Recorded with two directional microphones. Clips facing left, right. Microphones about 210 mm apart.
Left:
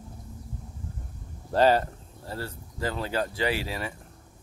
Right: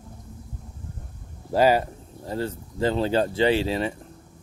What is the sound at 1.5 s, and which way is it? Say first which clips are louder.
Speech: right 2 dB; 10° right (ahead or behind).